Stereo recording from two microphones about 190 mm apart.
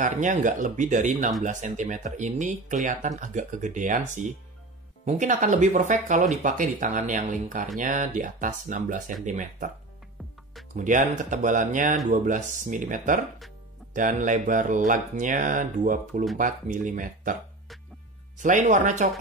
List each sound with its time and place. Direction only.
0.0 s speech: 40° right (ahead or behind)
10.8 s speech: 40° right (ahead or behind)
18.4 s speech: 40° right (ahead or behind)